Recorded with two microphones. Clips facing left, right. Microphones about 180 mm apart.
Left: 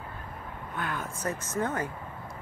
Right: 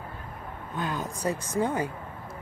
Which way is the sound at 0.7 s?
20° right (ahead or behind).